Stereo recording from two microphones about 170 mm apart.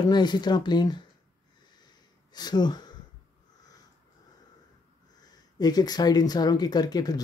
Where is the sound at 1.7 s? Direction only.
25° left (ahead or behind).